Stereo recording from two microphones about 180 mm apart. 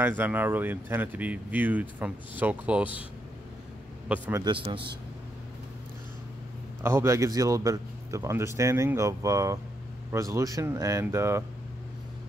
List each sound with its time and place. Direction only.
0.0 s speech: 10° right (ahead or behind)
4.1 s speech: 15° right (ahead or behind)
4.5 s speech: 25° right (ahead or behind)
6.8 s speech: 15° right (ahead or behind)